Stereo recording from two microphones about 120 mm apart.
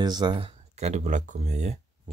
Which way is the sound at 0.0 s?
35° right (ahead or behind).